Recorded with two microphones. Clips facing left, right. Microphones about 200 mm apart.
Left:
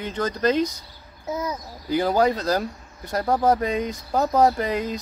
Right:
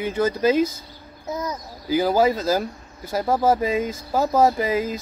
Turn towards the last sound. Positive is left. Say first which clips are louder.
# right 1 dB
turn(degrees=-5)  # may be behind; listen again after turning